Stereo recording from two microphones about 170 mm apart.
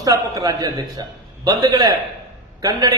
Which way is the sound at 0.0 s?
20° right (ahead or behind).